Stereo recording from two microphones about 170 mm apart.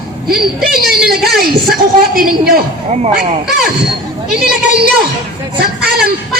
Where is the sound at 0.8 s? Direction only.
65° right (ahead or behind).